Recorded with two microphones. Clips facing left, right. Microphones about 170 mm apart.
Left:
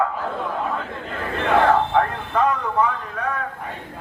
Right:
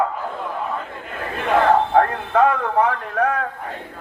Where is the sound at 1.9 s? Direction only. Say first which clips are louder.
Right 3 dB; 55° right (ahead or behind); by 3.4 s 70° right (ahead or behind).